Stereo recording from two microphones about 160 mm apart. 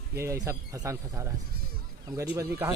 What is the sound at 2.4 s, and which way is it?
Speech, 15° right (ahead or behind).